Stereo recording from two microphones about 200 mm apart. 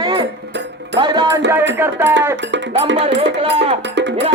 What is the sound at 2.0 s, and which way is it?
Music, 65° right (ahead or behind).